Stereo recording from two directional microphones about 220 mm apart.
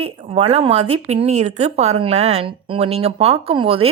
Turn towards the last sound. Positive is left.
turn(degrees=-25)  # may be behind; listen again after turning